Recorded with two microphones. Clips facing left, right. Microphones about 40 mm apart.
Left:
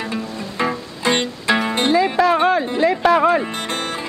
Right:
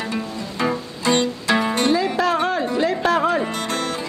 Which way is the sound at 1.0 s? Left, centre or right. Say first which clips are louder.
Even; left.